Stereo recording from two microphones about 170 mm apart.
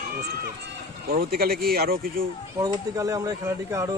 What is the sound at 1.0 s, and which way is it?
Speech, 60° right (ahead or behind).